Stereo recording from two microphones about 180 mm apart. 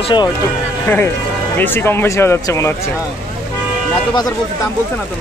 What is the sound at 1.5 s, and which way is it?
Speech, 10° left (ahead or behind).